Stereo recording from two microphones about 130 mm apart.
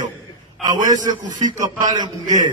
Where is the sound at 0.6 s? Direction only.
30° right (ahead or behind).